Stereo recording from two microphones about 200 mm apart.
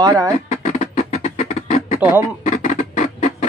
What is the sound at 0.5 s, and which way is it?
Music, 35° left (ahead or behind).